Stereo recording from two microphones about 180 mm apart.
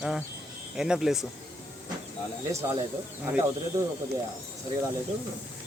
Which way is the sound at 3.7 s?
15° right (ahead or behind).